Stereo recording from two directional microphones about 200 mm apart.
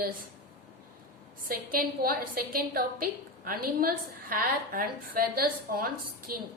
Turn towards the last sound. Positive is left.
turn(degrees=-45)  # may be behind; listen again after turning